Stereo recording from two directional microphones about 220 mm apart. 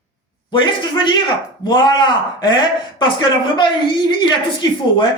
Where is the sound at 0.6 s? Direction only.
20° left (ahead or behind).